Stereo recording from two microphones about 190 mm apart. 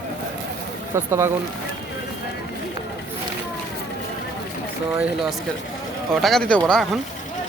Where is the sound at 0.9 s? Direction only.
15° right (ahead or behind).